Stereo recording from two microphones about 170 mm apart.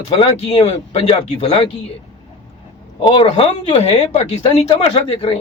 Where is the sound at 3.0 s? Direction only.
30° left (ahead or behind).